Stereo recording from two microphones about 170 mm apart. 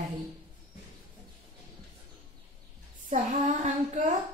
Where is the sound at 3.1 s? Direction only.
45° right (ahead or behind).